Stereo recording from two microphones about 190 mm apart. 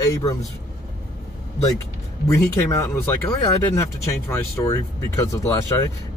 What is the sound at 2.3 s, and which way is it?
Speech, 10° left (ahead or behind).